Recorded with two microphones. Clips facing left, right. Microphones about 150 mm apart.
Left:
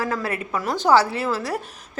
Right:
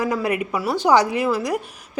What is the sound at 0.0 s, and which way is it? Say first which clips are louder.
A woman's voice: right 4 dB; 15° right (ahead or behind).